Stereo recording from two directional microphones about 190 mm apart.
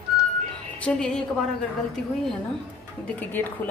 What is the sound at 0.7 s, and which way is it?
Speech, 5° left (ahead or behind).